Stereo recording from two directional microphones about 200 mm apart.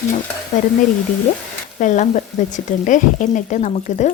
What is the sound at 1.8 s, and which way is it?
Speech, 40° left (ahead or behind).